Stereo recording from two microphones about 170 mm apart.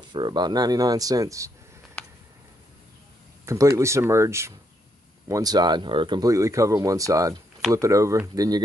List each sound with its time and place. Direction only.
0.1 s speech: 25° right (ahead or behind)
3.4 s speech: 15° right (ahead or behind)